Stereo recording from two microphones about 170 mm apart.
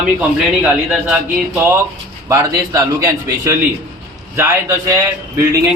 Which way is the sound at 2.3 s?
20° right (ahead or behind).